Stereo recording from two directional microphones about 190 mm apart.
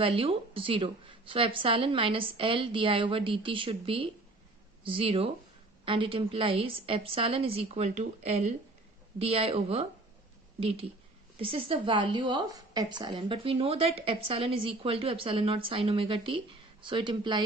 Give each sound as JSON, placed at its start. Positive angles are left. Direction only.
{"t": 0.0, "sound": "a woman's voice", "side_deg": -30}